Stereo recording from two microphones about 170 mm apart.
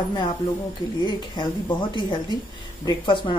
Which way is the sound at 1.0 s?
25° left (ahead or behind).